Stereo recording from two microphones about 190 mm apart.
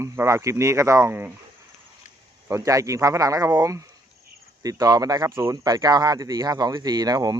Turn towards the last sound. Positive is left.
turn(degrees=-20)  # may be behind; listen again after turning